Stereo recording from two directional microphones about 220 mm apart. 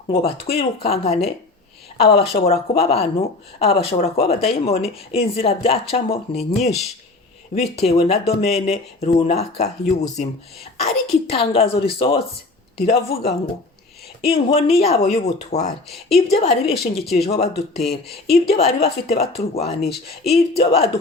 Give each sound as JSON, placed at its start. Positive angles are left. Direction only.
{"t": 0.5, "sound": "speech", "side_deg": 25}